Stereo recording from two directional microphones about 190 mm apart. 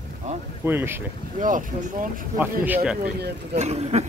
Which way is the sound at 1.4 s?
45° right (ahead or behind).